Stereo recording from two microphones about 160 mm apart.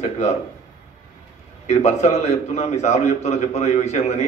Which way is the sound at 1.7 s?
45° left (ahead or behind).